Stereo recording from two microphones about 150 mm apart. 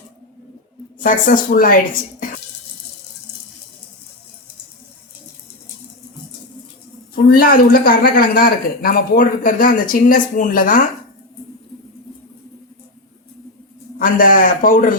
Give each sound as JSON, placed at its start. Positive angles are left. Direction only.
{"t": 0.9, "sound": "a woman's voice", "side_deg": 65}
{"t": 7.3, "sound": "speech", "side_deg": 75}
{"t": 14.0, "sound": "a woman's voice", "side_deg": 65}